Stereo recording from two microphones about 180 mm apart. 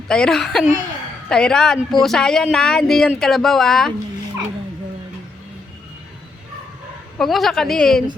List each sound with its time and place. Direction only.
0.1 s speech: 5° left (ahead or behind)
7.2 s speech: centre (ahead or behind)